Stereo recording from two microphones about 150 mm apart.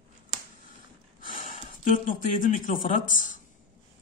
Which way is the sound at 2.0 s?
60° left (ahead or behind).